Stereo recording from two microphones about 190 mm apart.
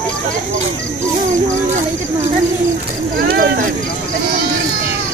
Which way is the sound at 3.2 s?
50° right (ahead or behind).